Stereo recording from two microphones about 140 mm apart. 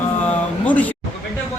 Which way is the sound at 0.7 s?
10° left (ahead or behind).